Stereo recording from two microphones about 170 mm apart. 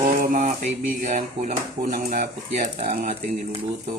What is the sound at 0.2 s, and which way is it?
Speech, 45° right (ahead or behind).